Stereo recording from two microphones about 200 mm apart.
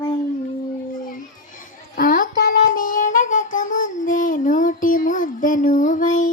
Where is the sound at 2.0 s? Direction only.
45° left (ahead or behind).